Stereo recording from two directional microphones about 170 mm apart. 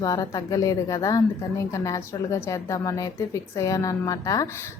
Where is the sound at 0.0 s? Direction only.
20° left (ahead or behind).